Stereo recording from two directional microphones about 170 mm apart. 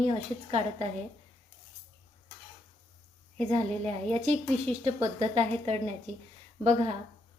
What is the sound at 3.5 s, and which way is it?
A woman's voice, 40° right (ahead or behind).